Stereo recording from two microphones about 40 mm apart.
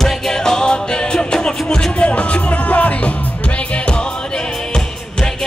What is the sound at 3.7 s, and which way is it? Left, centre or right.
Music, left.